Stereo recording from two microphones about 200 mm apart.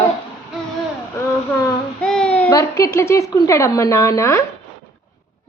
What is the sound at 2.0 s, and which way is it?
A child's voice, 5° left (ahead or behind).